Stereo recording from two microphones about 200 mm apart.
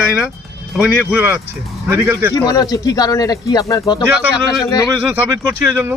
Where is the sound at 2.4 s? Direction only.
20° left (ahead or behind).